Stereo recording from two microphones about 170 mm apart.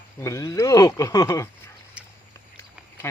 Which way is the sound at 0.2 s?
20° left (ahead or behind).